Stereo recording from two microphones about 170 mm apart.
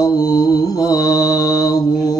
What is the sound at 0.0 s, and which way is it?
Mantra, 20° left (ahead or behind).